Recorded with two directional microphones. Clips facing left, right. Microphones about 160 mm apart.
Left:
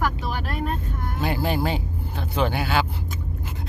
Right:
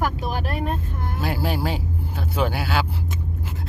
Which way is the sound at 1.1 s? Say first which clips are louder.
Left 1 dB; 5° right (ahead or behind).